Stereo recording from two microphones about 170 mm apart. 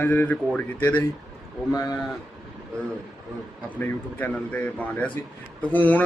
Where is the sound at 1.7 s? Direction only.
20° left (ahead or behind).